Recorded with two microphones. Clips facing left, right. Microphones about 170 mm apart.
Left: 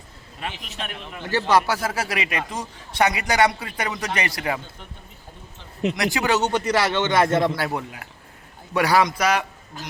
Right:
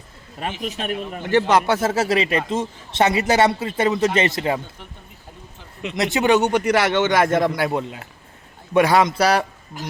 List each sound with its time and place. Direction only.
0.3 s a man's voice: 45° right (ahead or behind)
1.2 s a man's voice: 20° right (ahead or behind)
6.0 s a man's voice: 20° right (ahead or behind)